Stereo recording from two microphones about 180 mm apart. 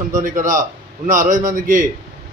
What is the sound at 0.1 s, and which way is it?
A man's voice, 45° right (ahead or behind).